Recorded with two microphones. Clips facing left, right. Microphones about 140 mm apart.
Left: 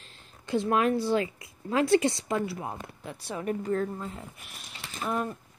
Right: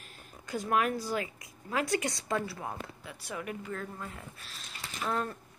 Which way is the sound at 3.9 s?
20° left (ahead or behind).